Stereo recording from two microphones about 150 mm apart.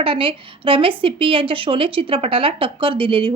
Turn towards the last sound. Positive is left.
turn(degrees=-35)  # may be behind; listen again after turning